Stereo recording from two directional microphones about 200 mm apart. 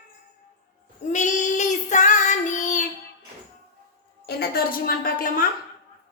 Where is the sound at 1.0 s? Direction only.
40° left (ahead or behind).